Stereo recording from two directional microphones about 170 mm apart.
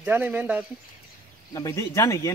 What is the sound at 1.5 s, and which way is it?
Speech, 20° left (ahead or behind).